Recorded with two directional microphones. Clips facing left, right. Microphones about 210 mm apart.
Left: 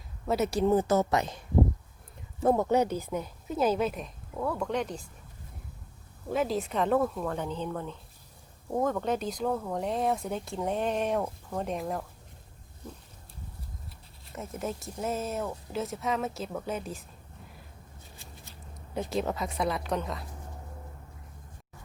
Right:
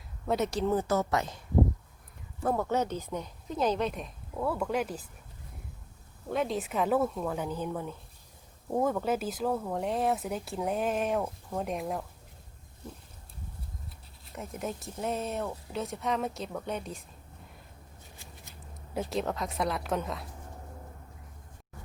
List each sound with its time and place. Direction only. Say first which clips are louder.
0.3 s speech: left 1 dB; 5° left (ahead or behind)
0.7 s speech: left 4 dB; 20° left (ahead or behind)
2.4 s speech: left 5 dB; 20° left (ahead or behind); by 5.0 s 5° right (ahead or behind)
6.3 s speech: left 2 dB; centre (ahead or behind)
14.3 s speech: left 1 dB; centre (ahead or behind)
18.9 s speech: left 1 dB; centre (ahead or behind)